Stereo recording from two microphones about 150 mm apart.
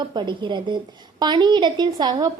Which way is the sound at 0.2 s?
30° right (ahead or behind).